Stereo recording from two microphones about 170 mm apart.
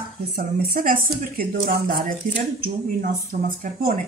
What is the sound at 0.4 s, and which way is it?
A woman's voice, 60° right (ahead or behind).